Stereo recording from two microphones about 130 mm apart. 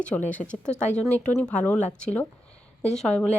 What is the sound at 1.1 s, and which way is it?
Speech, 10° left (ahead or behind).